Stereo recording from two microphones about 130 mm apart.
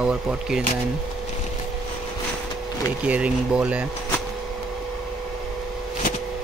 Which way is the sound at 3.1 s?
10° right (ahead or behind).